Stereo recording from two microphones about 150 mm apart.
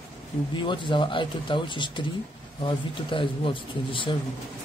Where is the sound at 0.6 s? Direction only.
30° left (ahead or behind).